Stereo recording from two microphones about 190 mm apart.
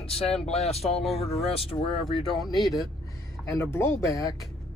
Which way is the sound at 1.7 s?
30° left (ahead or behind).